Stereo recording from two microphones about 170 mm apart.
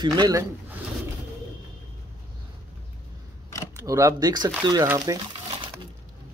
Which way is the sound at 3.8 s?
20° right (ahead or behind).